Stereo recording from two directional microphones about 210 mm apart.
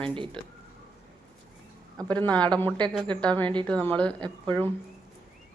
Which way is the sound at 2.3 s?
5° left (ahead or behind).